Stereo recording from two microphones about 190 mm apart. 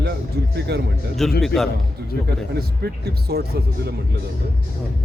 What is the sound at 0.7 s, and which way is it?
Speech, 60° right (ahead or behind).